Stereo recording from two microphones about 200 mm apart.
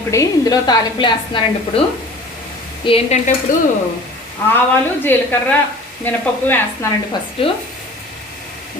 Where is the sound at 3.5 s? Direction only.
40° left (ahead or behind).